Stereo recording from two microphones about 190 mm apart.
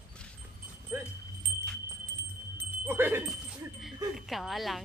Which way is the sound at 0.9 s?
15° right (ahead or behind).